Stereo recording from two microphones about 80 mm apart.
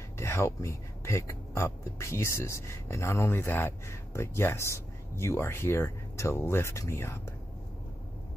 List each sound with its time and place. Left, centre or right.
0.2 s speech: left